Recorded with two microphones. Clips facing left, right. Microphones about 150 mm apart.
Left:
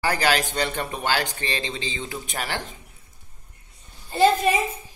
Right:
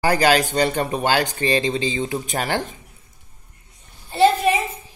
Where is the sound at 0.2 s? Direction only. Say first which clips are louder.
Right 6 dB; 45° right (ahead or behind).